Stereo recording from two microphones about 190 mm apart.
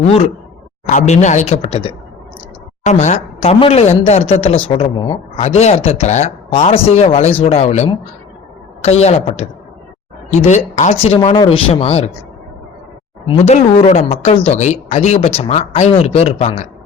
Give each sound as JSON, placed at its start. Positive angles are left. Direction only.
{"t": 0.9, "sound": "speech", "side_deg": 40}
{"t": 13.2, "sound": "speech", "side_deg": 30}